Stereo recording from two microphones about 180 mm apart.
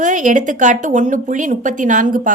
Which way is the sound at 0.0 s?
45° right (ahead or behind).